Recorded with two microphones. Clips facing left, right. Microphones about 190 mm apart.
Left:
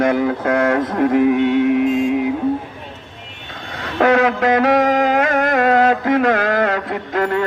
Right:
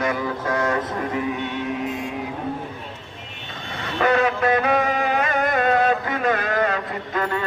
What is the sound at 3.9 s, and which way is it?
Music, 75° left (ahead or behind).